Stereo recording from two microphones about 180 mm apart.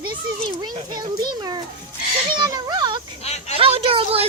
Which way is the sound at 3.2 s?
35° left (ahead or behind).